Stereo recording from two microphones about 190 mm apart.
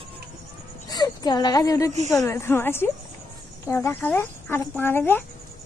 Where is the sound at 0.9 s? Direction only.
20° left (ahead or behind).